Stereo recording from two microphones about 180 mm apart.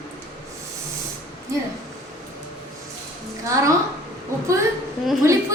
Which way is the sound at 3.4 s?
15° right (ahead or behind).